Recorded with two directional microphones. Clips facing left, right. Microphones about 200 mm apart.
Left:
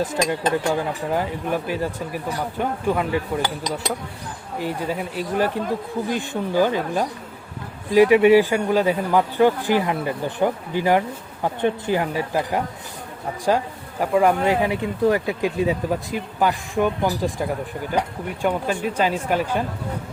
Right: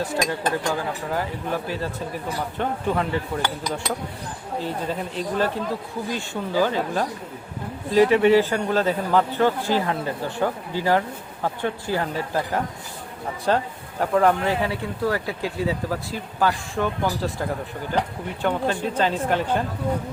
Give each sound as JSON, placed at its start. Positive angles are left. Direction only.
{"t": 0.0, "sound": "speech", "side_deg": 20}
{"t": 4.6, "sound": "speech", "side_deg": 10}
{"t": 18.4, "sound": "speech", "side_deg": 10}